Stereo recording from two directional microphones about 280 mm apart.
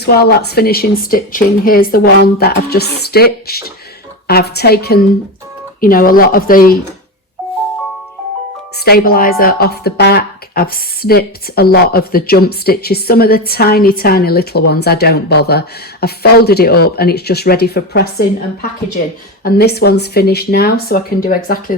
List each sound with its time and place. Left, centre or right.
0.0 s speech: left
8.8 s speech: left